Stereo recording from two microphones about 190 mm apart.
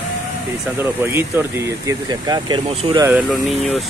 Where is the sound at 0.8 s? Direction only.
10° right (ahead or behind).